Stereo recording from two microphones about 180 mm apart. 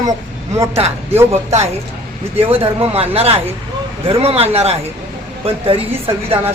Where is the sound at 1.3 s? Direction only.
35° right (ahead or behind).